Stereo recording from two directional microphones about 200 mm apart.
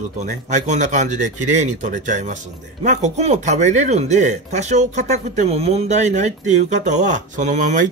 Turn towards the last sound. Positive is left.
turn(degrees=-40)  # may be behind; listen again after turning